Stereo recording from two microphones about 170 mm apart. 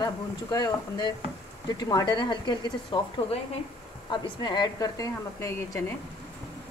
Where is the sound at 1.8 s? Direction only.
20° left (ahead or behind).